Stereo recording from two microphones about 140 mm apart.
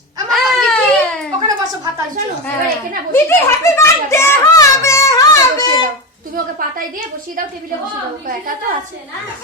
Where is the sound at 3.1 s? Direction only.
20° left (ahead or behind).